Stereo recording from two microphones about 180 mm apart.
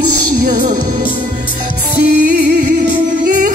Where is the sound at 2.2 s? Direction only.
60° right (ahead or behind).